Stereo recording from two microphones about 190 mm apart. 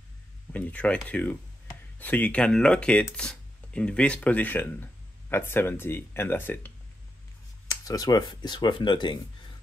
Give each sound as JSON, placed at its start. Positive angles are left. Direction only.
{"t": 0.5, "sound": "speech", "side_deg": 10}